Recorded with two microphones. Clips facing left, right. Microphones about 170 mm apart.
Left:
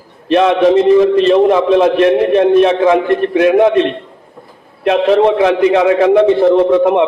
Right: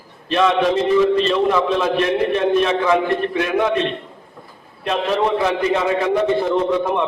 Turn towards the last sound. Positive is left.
turn(degrees=65)  # may be behind; listen again after turning